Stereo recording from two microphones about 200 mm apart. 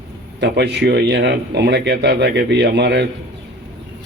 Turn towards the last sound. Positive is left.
turn(degrees=-55)  # may be behind; listen again after turning